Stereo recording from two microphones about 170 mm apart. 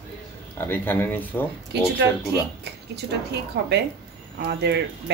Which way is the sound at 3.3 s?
80° right.